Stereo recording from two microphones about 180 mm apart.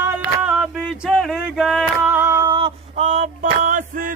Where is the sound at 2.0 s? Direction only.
15° right (ahead or behind).